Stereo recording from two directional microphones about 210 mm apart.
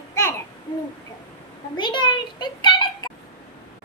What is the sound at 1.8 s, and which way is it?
A child's voice, 20° left (ahead or behind).